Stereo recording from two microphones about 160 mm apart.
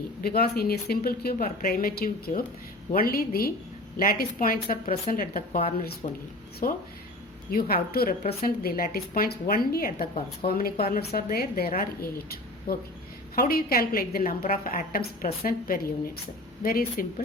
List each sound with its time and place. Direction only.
0.2 s a woman's voice: 70° left (ahead or behind)
6.6 s a woman's voice: 60° left (ahead or behind)
8.2 s speech: 40° left (ahead or behind)
8.4 s speech: 65° left (ahead or behind)
13.3 s a woman's voice: 70° left (ahead or behind)